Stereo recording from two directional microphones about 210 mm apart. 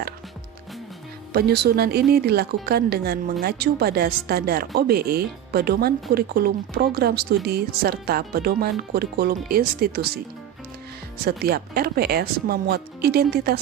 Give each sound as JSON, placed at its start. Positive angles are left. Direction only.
{"t": 1.3, "sound": "speech", "side_deg": -50}
{"t": 11.2, "sound": "speech", "side_deg": -45}